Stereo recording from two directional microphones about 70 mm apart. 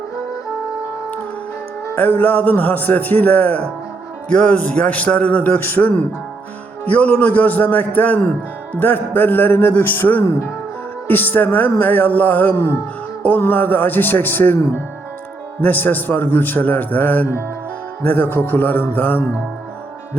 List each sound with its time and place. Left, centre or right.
2.0 s a man's voice: left
10.2 s speech: left
11.1 s a man's voice: left
15.6 s a man's voice: left